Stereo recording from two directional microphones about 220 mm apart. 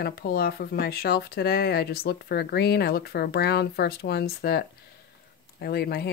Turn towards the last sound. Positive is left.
turn(degrees=45)  # may be behind; listen again after turning